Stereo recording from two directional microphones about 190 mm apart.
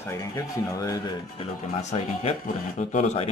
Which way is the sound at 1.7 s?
35° left (ahead or behind).